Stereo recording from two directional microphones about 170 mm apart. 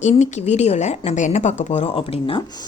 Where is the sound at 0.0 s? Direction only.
45° left (ahead or behind).